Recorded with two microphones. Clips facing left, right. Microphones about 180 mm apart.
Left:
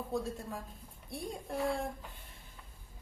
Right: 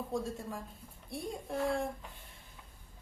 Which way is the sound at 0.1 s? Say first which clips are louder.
Left 2 dB; centre (ahead or behind).